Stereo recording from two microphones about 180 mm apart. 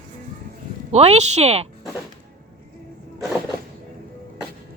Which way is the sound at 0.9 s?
35° right (ahead or behind).